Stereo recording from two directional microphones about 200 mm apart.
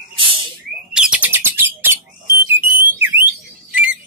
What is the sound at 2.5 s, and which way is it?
Alarm, 10° right (ahead or behind).